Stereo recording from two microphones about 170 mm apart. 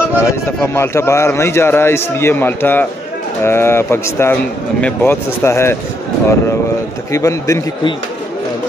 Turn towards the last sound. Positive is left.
turn(degrees=20)  # may be behind; listen again after turning